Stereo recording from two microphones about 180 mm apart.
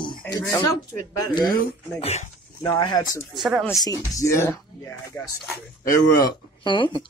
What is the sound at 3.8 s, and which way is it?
Speech, 20° left (ahead or behind).